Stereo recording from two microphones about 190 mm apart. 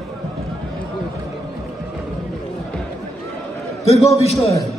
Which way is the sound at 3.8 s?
35° left (ahead or behind).